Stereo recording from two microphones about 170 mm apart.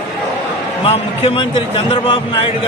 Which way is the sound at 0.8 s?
30° left (ahead or behind).